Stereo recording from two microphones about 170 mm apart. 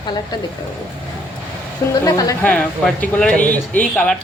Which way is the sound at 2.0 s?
20° left (ahead or behind).